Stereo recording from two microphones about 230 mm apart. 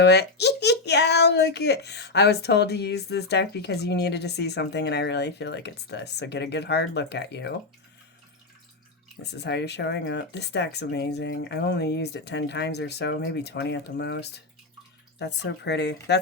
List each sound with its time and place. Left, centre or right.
0.0 s speech: left
9.2 s speech: left